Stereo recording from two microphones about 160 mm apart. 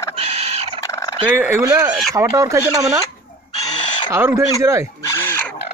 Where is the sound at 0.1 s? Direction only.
40° right (ahead or behind).